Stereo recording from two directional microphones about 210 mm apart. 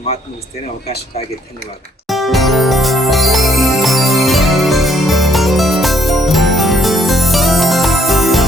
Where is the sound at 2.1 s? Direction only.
Centre (ahead or behind).